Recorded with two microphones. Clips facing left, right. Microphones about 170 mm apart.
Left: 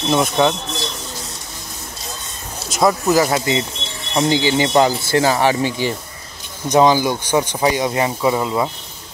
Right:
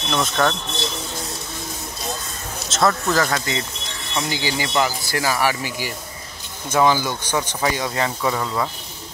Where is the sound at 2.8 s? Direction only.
15° left (ahead or behind).